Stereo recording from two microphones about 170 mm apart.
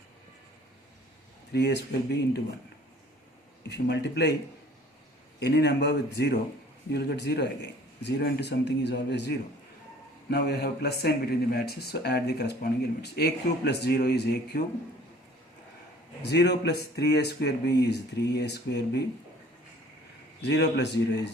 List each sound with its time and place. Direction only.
1.5 s speech: 85° left
3.7 s speech: 85° left
5.4 s speech: 75° left (ahead or behind)
10.2 s speech: 70° left (ahead or behind)
16.2 s speech: 85° left
20.4 s speech: 90° left